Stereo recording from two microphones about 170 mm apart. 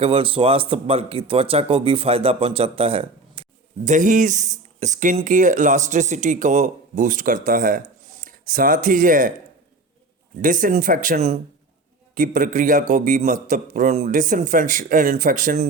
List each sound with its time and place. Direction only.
0.0 s speech: 30° right (ahead or behind)
3.8 s speech: 50° right (ahead or behind)
10.4 s speech: 50° right (ahead or behind)